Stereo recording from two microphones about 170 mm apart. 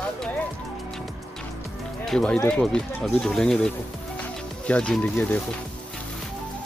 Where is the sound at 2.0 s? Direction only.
5° left (ahead or behind).